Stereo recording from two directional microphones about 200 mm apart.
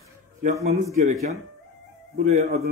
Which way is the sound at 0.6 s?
35° right (ahead or behind).